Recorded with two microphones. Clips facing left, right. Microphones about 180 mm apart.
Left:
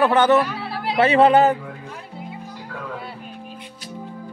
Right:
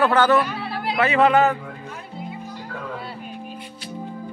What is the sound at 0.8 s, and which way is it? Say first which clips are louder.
Speech: left 3 dB; 30° left (ahead or behind).